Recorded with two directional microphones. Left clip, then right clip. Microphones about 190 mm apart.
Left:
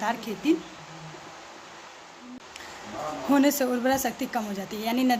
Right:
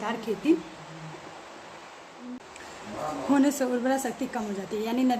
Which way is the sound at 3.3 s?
50° left (ahead or behind).